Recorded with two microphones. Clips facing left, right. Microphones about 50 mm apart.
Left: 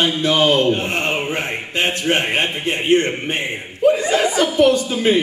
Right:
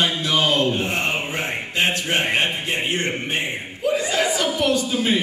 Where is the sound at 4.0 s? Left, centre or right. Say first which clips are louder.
Left 5 dB; left.